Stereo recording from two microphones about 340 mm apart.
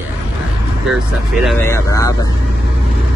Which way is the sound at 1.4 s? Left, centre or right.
Centre.